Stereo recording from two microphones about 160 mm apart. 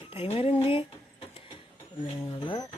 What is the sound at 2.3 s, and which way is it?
Speech, 25° left (ahead or behind).